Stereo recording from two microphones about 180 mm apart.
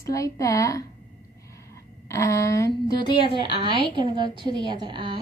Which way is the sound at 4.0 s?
25° right (ahead or behind).